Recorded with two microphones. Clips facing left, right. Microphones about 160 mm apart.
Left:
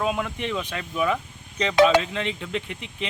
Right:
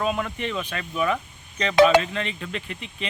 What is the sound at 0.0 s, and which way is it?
Speech, 15° left (ahead or behind).